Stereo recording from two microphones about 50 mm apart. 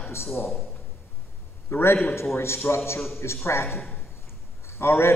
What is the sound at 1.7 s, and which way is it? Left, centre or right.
A man's voice, left.